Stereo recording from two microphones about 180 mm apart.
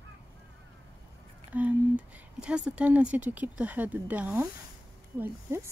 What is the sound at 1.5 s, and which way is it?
Speech, 10° right (ahead or behind).